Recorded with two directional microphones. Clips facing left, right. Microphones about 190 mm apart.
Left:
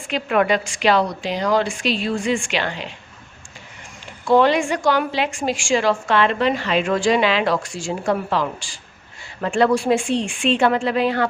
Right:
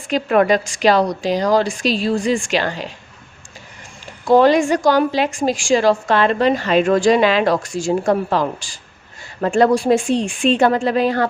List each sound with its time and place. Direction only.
0.1 s a woman's voice: 40° right (ahead or behind)
4.3 s a woman's voice: 40° right (ahead or behind)